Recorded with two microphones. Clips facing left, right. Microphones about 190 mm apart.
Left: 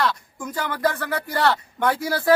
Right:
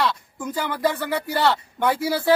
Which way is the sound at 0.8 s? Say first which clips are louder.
Even; 5° right (ahead or behind).